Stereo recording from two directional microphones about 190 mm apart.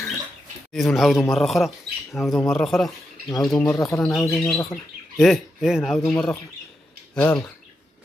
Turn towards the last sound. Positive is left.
turn(degrees=10)  # may be behind; listen again after turning